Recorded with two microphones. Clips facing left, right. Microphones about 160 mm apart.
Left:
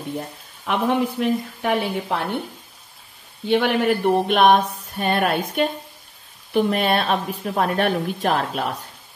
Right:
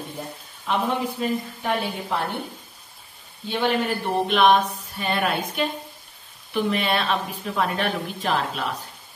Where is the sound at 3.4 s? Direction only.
65° left (ahead or behind).